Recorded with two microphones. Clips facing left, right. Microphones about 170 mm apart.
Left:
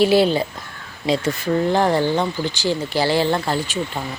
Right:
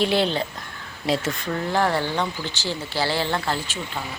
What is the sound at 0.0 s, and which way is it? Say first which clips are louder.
Speech: left 6 dB; 5° left (ahead or behind).